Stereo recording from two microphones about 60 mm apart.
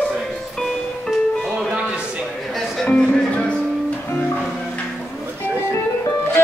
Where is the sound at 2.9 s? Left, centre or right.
Centre.